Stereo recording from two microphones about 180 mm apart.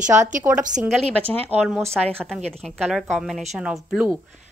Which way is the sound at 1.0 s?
30° right (ahead or behind).